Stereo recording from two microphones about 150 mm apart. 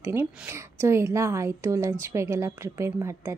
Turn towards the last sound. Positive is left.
turn(degrees=-20)  # may be behind; listen again after turning